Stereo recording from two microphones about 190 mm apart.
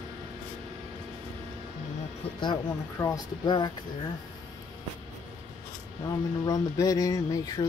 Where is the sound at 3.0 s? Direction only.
20° left (ahead or behind).